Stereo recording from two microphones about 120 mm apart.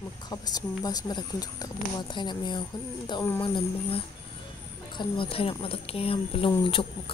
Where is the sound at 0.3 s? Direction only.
35° left (ahead or behind).